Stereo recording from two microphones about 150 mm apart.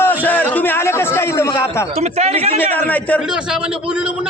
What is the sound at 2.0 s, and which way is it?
Speech, 45° right (ahead or behind).